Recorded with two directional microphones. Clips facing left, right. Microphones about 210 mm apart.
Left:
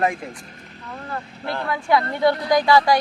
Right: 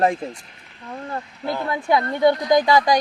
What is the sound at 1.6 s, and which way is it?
Speech, 20° right (ahead or behind).